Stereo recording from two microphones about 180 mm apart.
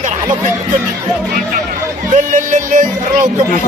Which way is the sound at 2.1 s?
45° right (ahead or behind).